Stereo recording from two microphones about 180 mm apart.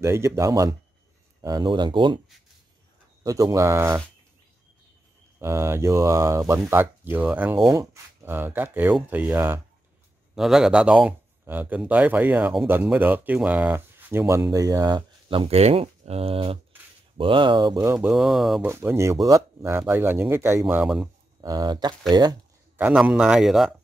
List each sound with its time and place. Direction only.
0.0 s speech: 15° right (ahead or behind)
3.3 s speech: 20° right (ahead or behind)
5.4 s speech: 15° right (ahead or behind)
17.9 s a man's voice: 5° right (ahead or behind)
18.7 s speech: 15° right (ahead or behind)
20.6 s a man's voice: centre (ahead or behind)
21.4 s speech: 20° right (ahead or behind)
22.8 s a man's voice: 10° right (ahead or behind)